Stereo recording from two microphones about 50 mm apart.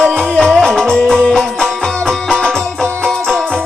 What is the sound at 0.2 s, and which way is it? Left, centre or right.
Music, centre.